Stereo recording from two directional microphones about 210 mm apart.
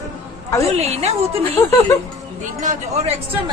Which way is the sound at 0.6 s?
30° right (ahead or behind).